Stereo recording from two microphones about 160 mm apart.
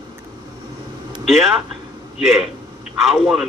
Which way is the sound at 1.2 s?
Centre (ahead or behind).